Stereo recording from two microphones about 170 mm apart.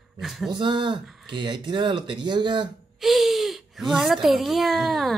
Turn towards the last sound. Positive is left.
turn(degrees=0)  # may be behind; listen again after turning